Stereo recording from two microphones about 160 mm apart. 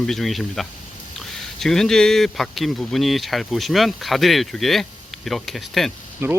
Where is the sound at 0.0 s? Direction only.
Centre (ahead or behind).